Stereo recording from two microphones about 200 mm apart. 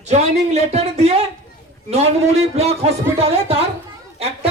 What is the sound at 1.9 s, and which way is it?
Speech, 35° right (ahead or behind).